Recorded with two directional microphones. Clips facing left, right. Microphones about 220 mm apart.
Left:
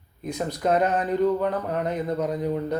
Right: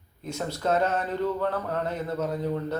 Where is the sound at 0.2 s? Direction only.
15° left (ahead or behind).